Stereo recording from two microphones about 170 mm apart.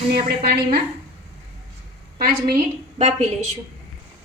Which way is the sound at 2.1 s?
60° right (ahead or behind).